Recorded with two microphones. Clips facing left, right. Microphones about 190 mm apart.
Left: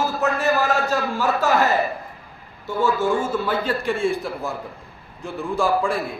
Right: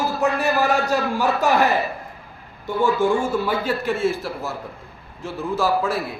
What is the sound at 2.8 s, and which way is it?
A man's voice, 15° right (ahead or behind).